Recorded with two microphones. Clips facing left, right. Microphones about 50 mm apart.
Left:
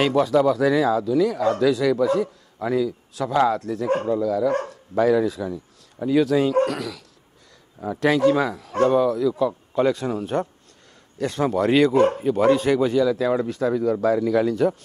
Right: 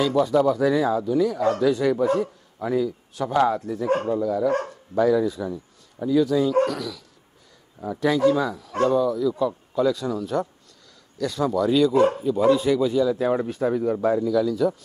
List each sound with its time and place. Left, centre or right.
0.0 s a man's voice: left
6.5 s a man's voice: left
8.0 s a man's voice: left